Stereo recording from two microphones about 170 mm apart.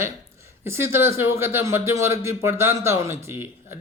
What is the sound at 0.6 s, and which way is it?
Speech, 15° right (ahead or behind).